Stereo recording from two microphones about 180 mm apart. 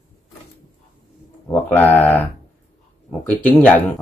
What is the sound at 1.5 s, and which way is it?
Speech, 10° left (ahead or behind).